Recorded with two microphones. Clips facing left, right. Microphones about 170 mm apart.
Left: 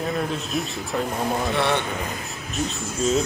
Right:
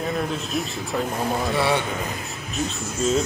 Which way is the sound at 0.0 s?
Centre (ahead or behind).